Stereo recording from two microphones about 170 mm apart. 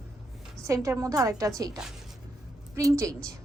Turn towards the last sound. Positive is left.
turn(degrees=-20)  # may be behind; listen again after turning